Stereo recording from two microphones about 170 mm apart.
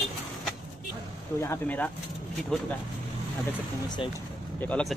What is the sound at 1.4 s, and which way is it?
Speech, 10° left (ahead or behind).